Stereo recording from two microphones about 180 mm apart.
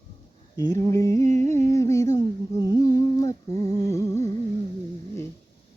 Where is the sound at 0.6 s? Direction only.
20° left (ahead or behind).